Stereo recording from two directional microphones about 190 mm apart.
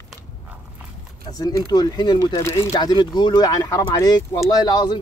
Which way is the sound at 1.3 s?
20° left (ahead or behind).